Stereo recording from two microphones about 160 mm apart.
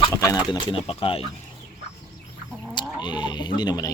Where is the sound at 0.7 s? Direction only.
35° left (ahead or behind).